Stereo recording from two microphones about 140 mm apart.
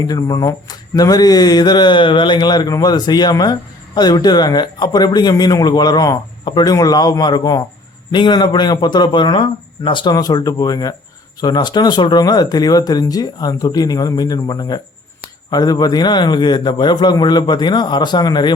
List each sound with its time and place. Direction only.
0.0 s a man's voice: 25° left (ahead or behind)